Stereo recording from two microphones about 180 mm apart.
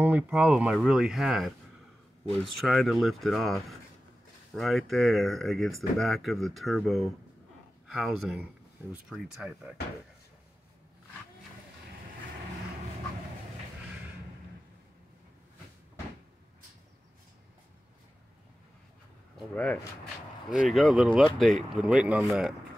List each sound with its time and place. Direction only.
0.0 s speech: 5° right (ahead or behind)
2.6 s speech: centre (ahead or behind)
19.5 s speech: 5° left (ahead or behind)